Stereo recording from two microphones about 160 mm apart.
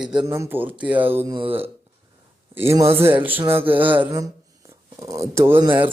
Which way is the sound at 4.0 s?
20° right (ahead or behind).